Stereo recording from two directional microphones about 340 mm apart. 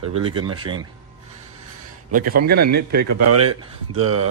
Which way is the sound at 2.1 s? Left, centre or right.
Right.